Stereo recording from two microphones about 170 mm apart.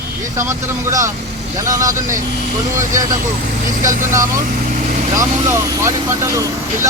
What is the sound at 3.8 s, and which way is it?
Speech, 50° right (ahead or behind).